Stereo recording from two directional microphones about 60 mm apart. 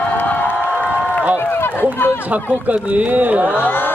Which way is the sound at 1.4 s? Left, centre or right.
Left.